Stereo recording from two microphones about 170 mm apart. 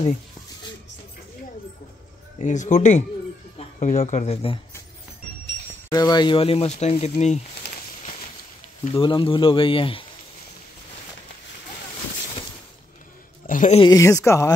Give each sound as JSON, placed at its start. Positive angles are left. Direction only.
{"t": 2.3, "sound": "speech", "side_deg": 45}
{"t": 5.9, "sound": "speech", "side_deg": 25}
{"t": 8.9, "sound": "speech", "side_deg": 30}
{"t": 13.5, "sound": "a sound", "side_deg": 50}
{"t": 13.7, "sound": "speech", "side_deg": 20}